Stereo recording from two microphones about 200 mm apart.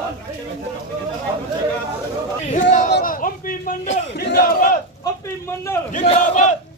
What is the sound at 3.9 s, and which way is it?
Battle cry, 60° left (ahead or behind).